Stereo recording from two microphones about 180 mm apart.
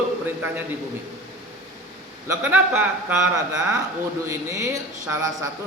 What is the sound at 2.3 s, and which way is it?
A man's voice, 10° right (ahead or behind).